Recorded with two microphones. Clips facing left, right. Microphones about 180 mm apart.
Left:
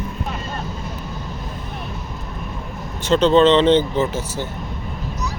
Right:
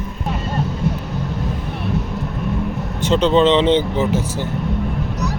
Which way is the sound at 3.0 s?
15° right (ahead or behind).